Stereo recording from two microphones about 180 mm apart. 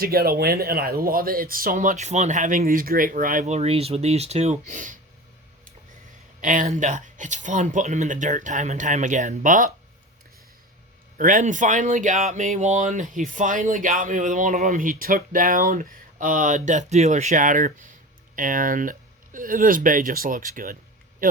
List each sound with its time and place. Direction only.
0.0 s speech: 55° right (ahead or behind)
6.4 s speech: 45° right (ahead or behind)
11.2 s speech: 45° right (ahead or behind)